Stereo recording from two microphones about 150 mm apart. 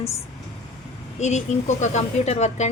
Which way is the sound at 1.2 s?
50° left (ahead or behind).